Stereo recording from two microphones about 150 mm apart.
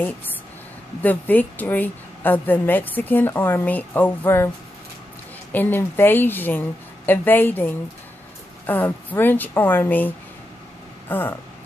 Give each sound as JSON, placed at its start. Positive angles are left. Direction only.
{"t": 1.0, "sound": "a woman's voice", "side_deg": 10}
{"t": 5.5, "sound": "a woman's voice", "side_deg": 10}